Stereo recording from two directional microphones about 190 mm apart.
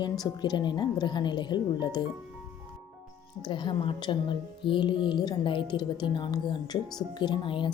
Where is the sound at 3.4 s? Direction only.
25° left (ahead or behind).